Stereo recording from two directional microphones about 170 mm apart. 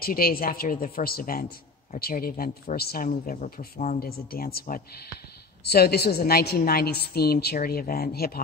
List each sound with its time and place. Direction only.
0.0 s a woman's voice: 60° left (ahead or behind)